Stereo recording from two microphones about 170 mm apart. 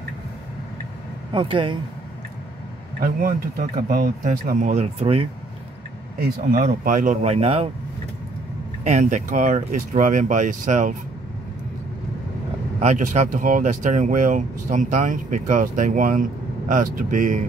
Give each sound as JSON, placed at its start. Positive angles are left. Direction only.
{"t": 1.3, "sound": "speech", "side_deg": -30}
{"t": 3.0, "sound": "speech", "side_deg": -55}
{"t": 6.1, "sound": "speech", "side_deg": -60}
{"t": 8.8, "sound": "speech", "side_deg": -45}
{"t": 12.8, "sound": "speech", "side_deg": -45}